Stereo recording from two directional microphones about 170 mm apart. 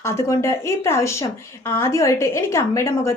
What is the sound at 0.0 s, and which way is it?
Speech, 15° left (ahead or behind).